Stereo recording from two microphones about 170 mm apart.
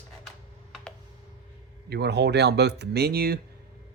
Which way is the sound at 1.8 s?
75° right (ahead or behind).